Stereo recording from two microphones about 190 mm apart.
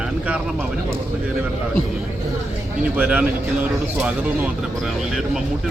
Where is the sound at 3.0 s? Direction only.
5° right (ahead or behind).